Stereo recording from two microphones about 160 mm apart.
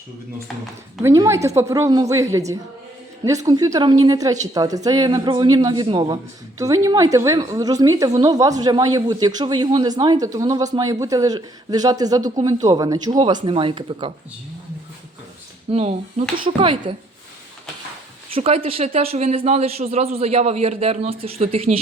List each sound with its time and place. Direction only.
1.0 s a woman's voice: 20° right (ahead or behind)
15.7 s speech: 40° right (ahead or behind)
18.3 s speech: 40° right (ahead or behind)